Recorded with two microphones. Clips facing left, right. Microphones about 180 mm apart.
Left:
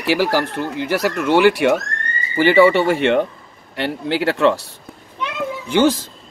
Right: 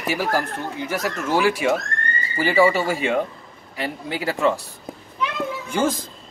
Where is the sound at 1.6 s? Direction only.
70° left (ahead or behind).